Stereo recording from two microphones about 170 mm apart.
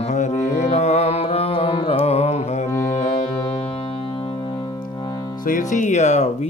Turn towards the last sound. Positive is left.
turn(degrees=40)  # may be behind; listen again after turning